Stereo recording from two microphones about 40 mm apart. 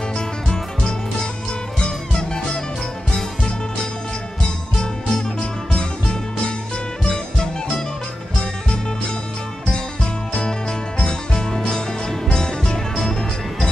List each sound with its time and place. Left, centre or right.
0.1 s music: centre
4.7 s music: left
7.1 s music: centre
11.0 s music: centre